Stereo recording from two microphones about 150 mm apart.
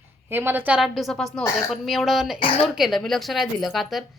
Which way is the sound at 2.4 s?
40° left (ahead or behind).